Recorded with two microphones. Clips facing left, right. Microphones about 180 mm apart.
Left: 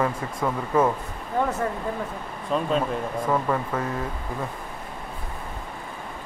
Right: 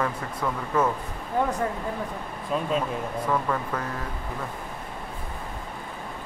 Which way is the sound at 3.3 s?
15° left (ahead or behind).